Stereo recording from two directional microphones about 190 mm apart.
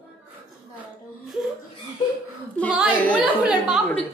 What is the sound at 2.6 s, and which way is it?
Speech, 5° left (ahead or behind).